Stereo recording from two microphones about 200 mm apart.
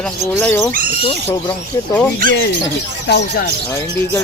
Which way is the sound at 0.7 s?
45° right (ahead or behind).